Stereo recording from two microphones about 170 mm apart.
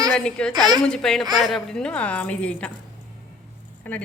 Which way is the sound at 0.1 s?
5° left (ahead or behind).